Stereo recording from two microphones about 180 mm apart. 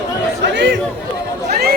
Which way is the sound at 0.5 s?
80° right.